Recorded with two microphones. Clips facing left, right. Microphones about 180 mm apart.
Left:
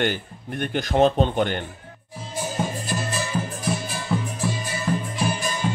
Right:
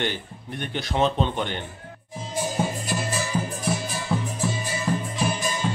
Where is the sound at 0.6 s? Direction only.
50° left (ahead or behind).